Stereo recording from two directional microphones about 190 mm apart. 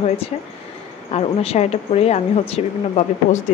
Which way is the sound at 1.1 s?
35° left (ahead or behind).